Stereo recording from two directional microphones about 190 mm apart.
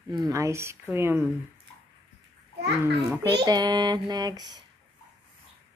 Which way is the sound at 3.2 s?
20° right (ahead or behind).